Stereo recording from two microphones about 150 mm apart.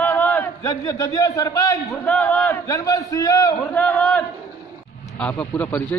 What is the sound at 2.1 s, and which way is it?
Speech, 10° left (ahead or behind).